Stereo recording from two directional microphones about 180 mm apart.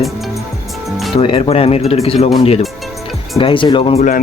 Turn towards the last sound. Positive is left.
turn(degrees=30)  # may be behind; listen again after turning